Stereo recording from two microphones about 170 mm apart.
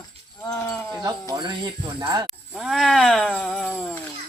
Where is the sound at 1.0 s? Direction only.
25° right (ahead or behind).